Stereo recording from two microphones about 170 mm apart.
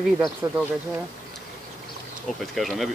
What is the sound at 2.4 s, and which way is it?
Speech, centre (ahead or behind).